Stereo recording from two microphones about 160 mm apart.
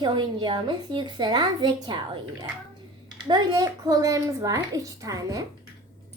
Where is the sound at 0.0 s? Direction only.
30° right (ahead or behind).